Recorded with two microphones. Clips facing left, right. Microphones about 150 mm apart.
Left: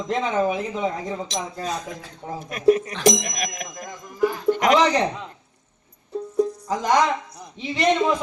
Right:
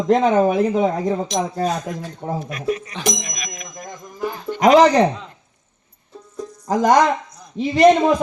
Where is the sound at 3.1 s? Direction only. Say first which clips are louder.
Left 3 dB; 70° left (ahead or behind).